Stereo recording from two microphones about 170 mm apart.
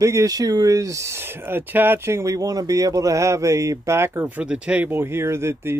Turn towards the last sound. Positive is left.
turn(degrees=-15)  # may be behind; listen again after turning